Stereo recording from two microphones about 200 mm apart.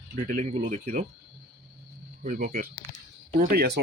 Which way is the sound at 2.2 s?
40° right (ahead or behind).